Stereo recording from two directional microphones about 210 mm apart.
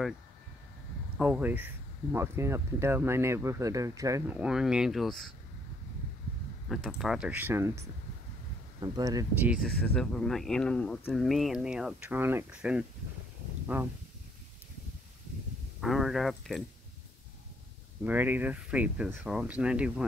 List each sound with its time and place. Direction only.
1.1 s speech: 5° right (ahead or behind)
6.7 s speech: centre (ahead or behind); by 9.5 s 15° right (ahead or behind)
9.8 s speech: 5° left (ahead or behind)
15.8 s speech: centre (ahead or behind)
18.0 s speech: 10° right (ahead or behind)